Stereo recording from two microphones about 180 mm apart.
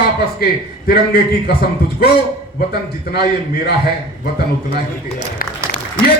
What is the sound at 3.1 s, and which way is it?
Speech, 60° left (ahead or behind).